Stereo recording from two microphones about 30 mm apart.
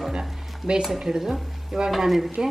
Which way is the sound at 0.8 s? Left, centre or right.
Centre.